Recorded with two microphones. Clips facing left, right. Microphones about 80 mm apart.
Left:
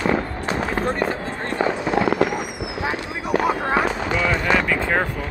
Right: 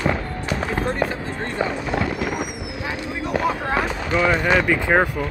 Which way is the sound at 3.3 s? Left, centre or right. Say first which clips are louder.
Left 2 dB; centre.